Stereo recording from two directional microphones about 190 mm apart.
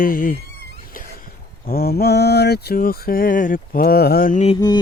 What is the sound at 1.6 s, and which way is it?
Mantra, 50° left (ahead or behind).